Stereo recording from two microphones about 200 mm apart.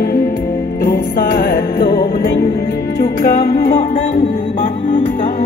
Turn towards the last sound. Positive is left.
turn(degrees=50)  # may be behind; listen again after turning